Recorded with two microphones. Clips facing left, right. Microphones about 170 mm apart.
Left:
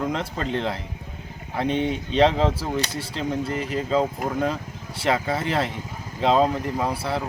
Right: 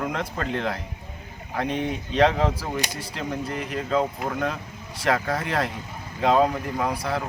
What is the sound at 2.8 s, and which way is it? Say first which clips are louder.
Speech: left 2 dB; 15° right (ahead or behind).